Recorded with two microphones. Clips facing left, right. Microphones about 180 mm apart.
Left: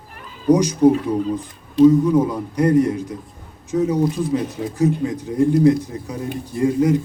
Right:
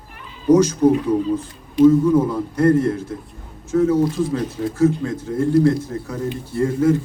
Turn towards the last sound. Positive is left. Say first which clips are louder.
# even
turn(degrees=15)  # may be behind; listen again after turning